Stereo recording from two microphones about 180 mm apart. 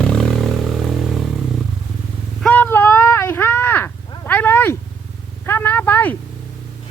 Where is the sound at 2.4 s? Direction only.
10° left (ahead or behind).